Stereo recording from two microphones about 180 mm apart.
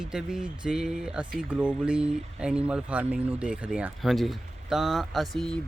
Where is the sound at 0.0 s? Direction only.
5° right (ahead or behind).